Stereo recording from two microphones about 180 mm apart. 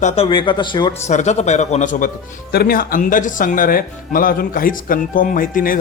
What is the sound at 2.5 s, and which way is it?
Speech, 55° left (ahead or behind).